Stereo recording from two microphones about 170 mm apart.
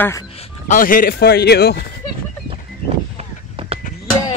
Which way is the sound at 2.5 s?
35° right (ahead or behind).